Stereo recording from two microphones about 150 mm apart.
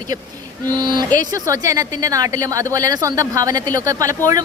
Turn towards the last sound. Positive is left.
turn(degrees=-20)  # may be behind; listen again after turning